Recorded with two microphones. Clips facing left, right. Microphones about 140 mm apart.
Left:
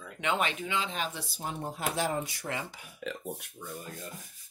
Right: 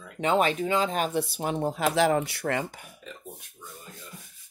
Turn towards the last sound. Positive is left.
turn(degrees=80)